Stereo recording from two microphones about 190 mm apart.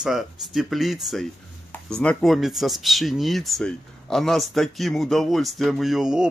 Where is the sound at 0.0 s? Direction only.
Centre (ahead or behind).